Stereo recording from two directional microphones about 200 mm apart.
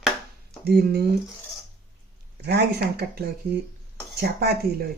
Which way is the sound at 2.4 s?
55° right (ahead or behind).